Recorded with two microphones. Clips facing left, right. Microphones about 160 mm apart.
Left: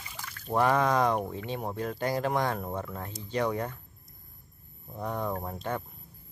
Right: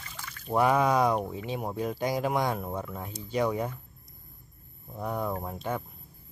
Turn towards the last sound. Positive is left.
turn(degrees=-5)  # may be behind; listen again after turning